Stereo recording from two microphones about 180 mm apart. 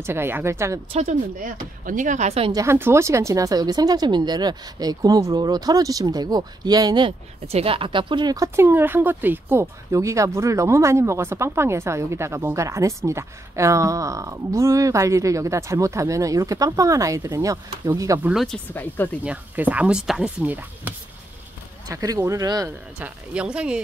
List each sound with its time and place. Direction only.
0.0 s speech: 15° right (ahead or behind)
0.9 s speech: 45° right (ahead or behind)
2.5 s speech: 15° right (ahead or behind)
18.2 s speech: centre (ahead or behind)
18.7 s speech: 10° left (ahead or behind)
19.2 s speech: 10° right (ahead or behind)
21.8 s speech: 20° right (ahead or behind)
22.9 s speech: 5° right (ahead or behind)